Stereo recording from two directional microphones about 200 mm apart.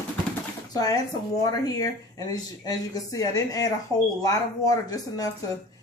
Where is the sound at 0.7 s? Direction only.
20° left (ahead or behind).